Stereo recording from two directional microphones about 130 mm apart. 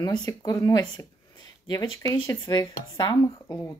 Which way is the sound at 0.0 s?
30° left (ahead or behind).